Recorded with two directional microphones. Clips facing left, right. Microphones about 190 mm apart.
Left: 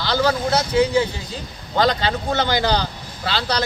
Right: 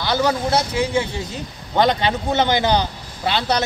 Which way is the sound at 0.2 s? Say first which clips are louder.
Left 1 dB; 25° right (ahead or behind).